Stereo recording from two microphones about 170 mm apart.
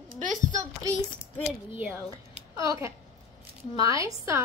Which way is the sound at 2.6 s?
20° right (ahead or behind).